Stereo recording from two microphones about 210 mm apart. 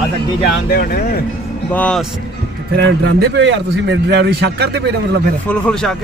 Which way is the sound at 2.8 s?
55° right (ahead or behind).